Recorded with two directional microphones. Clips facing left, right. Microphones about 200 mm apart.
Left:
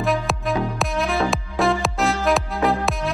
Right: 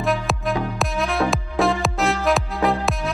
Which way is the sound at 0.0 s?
Centre (ahead or behind).